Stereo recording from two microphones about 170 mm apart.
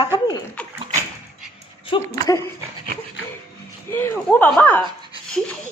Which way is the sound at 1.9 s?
30° left (ahead or behind).